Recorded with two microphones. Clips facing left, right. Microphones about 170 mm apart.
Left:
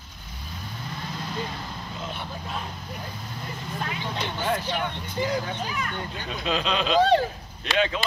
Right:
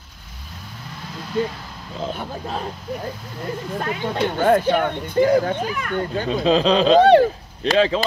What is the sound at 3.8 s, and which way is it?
Speech, 50° right (ahead or behind).